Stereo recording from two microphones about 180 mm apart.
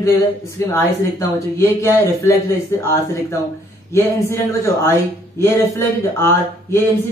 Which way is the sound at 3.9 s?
15° left (ahead or behind).